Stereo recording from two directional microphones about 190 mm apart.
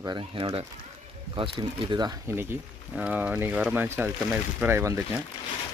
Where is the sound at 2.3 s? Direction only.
10° right (ahead or behind).